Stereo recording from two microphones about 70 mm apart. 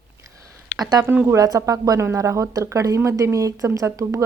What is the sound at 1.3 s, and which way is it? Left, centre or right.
Speech, right.